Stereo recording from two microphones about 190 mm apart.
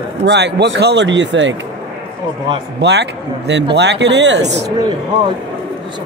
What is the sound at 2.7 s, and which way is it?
Speech, 65° right (ahead or behind).